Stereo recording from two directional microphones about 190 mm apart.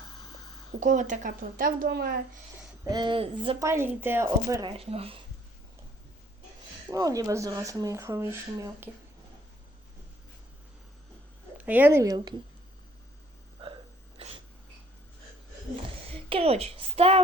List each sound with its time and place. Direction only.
0.8 s a woman's voice: 40° right (ahead or behind)
2.9 s speech: 25° right (ahead or behind)
3.6 s speech: 15° right (ahead or behind)
4.7 s a woman's voice: 30° right (ahead or behind)
6.9 s speech: 15° right (ahead or behind)
11.5 s speech: 10° right (ahead or behind)
13.6 s hiccup: 30° right (ahead or behind)
14.2 s a sound: 35° right (ahead or behind)
16.3 s a woman's voice: 30° right (ahead or behind)